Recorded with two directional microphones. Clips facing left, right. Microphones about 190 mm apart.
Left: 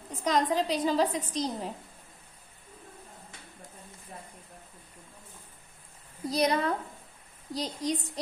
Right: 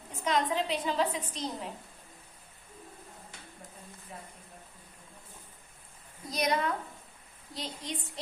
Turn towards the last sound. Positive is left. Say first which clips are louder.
# left 8 dB
turn(degrees=40)  # may be behind; listen again after turning